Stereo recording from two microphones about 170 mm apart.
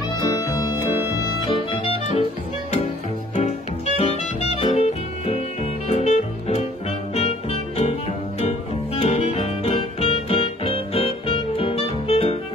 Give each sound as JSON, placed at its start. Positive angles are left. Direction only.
{"t": 0.2, "sound": "music", "side_deg": 20}
{"t": 1.4, "sound": "music", "side_deg": 30}
{"t": 4.0, "sound": "music", "side_deg": 35}